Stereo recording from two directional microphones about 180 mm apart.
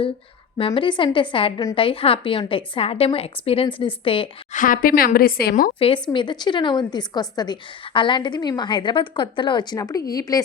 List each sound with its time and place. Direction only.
0.6 s a woman's voice: 30° left (ahead or behind)
4.5 s a woman's voice: 50° left (ahead or behind)
6.1 s a woman's voice: 25° left (ahead or behind)